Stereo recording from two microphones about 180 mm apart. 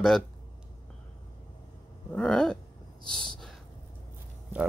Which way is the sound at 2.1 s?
5° left (ahead or behind).